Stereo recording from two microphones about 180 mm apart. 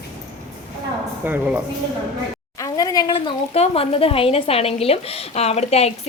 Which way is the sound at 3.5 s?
35° left (ahead or behind).